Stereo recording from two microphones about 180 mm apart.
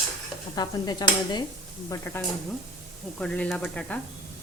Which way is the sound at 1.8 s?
15° left (ahead or behind).